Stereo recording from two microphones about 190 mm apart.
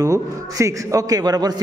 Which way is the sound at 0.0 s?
15° right (ahead or behind).